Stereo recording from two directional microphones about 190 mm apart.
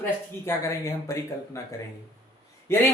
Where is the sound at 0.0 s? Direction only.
15° left (ahead or behind).